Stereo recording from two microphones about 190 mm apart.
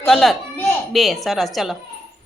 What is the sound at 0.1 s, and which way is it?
Speech, centre (ahead or behind).